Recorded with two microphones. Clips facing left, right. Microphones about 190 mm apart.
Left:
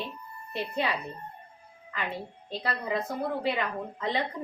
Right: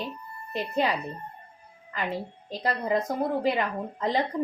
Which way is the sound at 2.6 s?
40° right (ahead or behind).